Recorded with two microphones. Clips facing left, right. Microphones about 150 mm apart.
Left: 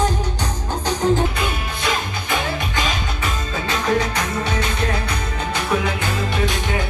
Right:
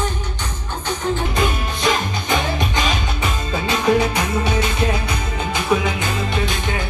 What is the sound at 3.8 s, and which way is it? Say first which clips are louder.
Music: right 4 dB; 15° right (ahead or behind).